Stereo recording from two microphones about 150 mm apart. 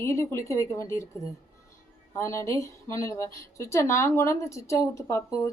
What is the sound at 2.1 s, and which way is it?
Speech, 20° left (ahead or behind).